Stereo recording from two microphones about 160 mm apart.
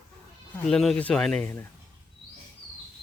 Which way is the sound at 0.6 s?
Centre (ahead or behind).